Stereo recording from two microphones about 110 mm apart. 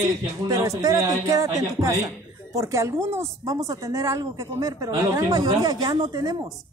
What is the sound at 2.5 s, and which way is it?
A woman's voice, 30° right (ahead or behind).